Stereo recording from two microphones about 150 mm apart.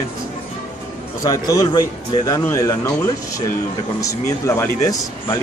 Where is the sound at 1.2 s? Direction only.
25° left (ahead or behind).